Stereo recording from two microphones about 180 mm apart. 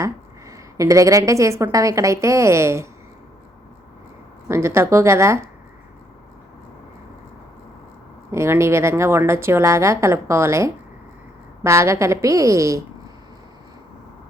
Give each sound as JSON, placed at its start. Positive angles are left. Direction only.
{"t": 0.0, "sound": "a woman's voice", "side_deg": -15}
{"t": 4.4, "sound": "a woman's voice", "side_deg": -15}
{"t": 8.3, "sound": "a woman's voice", "side_deg": -15}